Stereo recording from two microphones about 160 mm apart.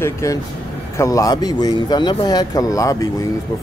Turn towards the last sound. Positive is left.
turn(degrees=20)  # may be behind; listen again after turning